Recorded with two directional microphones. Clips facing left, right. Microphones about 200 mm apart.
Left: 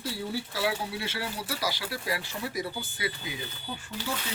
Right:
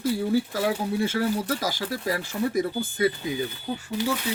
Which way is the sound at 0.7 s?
45° right (ahead or behind).